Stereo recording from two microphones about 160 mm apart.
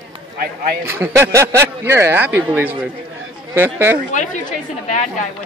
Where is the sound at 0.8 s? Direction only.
15° right (ahead or behind).